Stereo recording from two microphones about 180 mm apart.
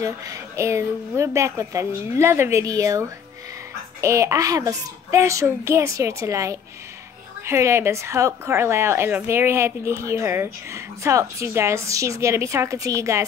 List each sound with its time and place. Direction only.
0.0 s a woman's voice: 20° right (ahead or behind)